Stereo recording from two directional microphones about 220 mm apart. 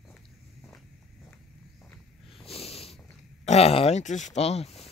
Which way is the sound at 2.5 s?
25° left (ahead or behind).